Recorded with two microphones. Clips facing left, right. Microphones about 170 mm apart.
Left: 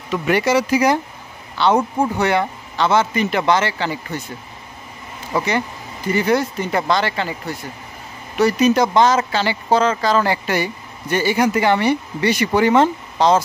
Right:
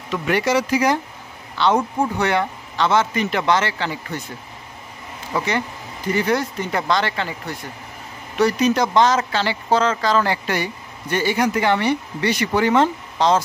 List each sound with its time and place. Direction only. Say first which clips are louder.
0.1 s a man's voice: left 2 dB; 5° left (ahead or behind)
6.1 s a man's voice: left 3 dB; 5° left (ahead or behind)